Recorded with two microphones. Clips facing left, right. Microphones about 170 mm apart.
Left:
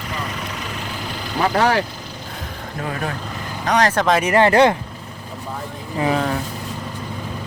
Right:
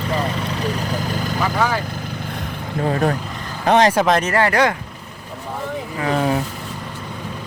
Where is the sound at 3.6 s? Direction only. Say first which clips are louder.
Right 4 dB; 25° right (ahead or behind).